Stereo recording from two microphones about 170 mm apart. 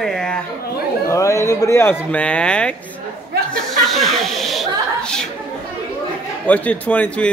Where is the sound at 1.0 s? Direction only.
20° left (ahead or behind).